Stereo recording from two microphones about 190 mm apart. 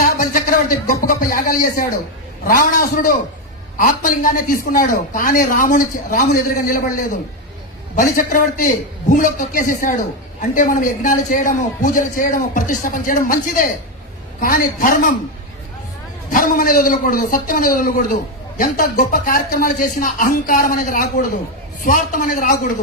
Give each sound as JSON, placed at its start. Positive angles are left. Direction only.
{"t": 0.0, "sound": "a man's voice", "side_deg": 45}
{"t": 7.9, "sound": "a man's voice", "side_deg": 45}
{"t": 16.3, "sound": "a man's voice", "side_deg": 45}